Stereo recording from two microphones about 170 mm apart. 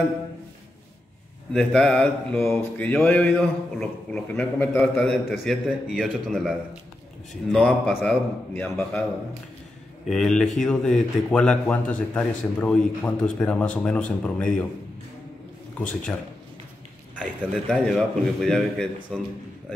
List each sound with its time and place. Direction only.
1.5 s a man's voice: 5° left (ahead or behind)
10.0 s speech: 5° left (ahead or behind)
15.8 s speech: 50° left (ahead or behind)
17.2 s speech: 5° left (ahead or behind)